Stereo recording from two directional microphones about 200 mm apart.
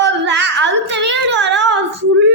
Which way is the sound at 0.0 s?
60° right (ahead or behind).